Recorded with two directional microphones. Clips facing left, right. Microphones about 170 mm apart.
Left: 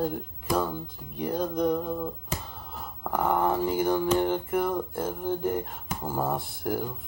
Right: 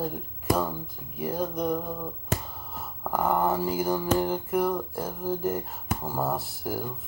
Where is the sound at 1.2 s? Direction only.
5° right (ahead or behind).